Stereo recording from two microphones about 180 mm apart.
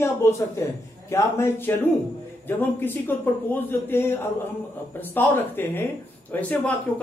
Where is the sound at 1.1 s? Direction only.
15° left (ahead or behind).